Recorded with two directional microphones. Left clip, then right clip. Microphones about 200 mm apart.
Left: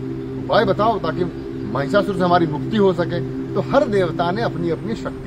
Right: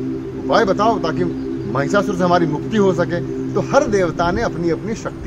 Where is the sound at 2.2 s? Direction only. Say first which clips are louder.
Right 1 dB; 5° right (ahead or behind).